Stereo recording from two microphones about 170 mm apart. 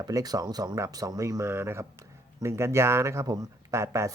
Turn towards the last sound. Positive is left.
turn(degrees=-15)  # may be behind; listen again after turning